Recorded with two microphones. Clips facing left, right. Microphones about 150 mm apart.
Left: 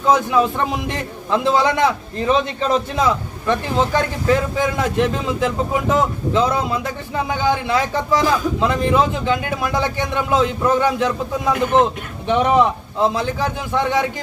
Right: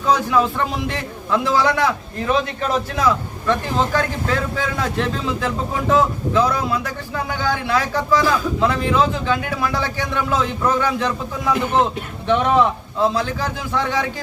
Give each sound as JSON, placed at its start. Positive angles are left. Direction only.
{"t": 0.0, "sound": "a man's voice", "side_deg": 20}